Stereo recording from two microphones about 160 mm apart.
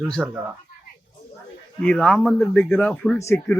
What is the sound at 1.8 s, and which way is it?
Speech, 5° left (ahead or behind).